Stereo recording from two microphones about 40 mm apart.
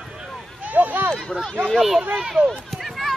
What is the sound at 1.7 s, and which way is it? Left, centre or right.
Speech, centre.